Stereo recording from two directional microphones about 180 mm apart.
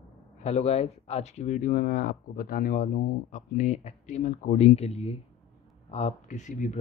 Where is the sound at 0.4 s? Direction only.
35° left (ahead or behind).